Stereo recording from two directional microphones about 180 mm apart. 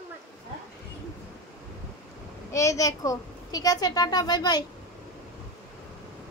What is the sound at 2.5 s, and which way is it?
A child's voice, 15° left (ahead or behind).